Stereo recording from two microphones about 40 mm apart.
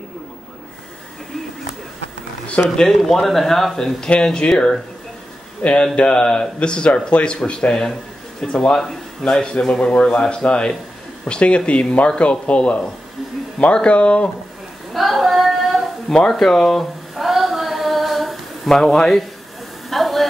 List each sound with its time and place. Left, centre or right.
2.6 s a man's voice: centre; by 5.9 s left
5.9 s speech: left
9.2 s speech: centre; by 14.3 s left
15.0 s female singing: centre
16.3 s speech: centre
17.1 s female singing: centre
18.7 s speech: centre
19.9 s a sound: centre